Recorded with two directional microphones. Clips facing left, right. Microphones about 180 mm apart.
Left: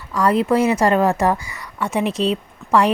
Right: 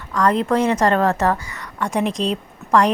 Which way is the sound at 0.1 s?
10° left (ahead or behind).